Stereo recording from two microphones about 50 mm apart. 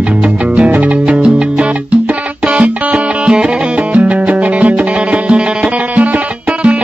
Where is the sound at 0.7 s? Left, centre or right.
Right.